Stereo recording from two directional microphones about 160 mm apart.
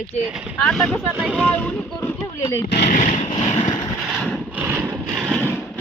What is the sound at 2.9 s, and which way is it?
Vehicle, 50° left (ahead or behind).